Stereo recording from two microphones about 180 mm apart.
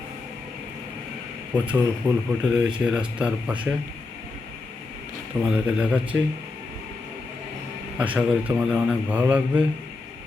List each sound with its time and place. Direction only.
1.6 s a man's voice: 10° right (ahead or behind)
5.4 s a man's voice: 5° right (ahead or behind)
7.9 s a man's voice: 10° right (ahead or behind)